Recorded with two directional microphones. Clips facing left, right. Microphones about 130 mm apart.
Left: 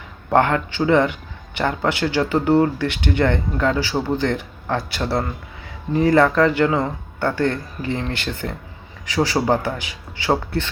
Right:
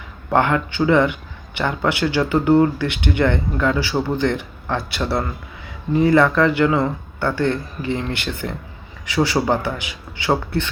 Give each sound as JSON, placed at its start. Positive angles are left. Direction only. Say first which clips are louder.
{"t": 0.3, "sound": "speech", "louder": "left 1 dB", "side_deg": 35}